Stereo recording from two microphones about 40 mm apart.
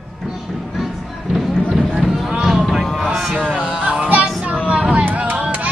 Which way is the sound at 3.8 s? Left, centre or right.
Right.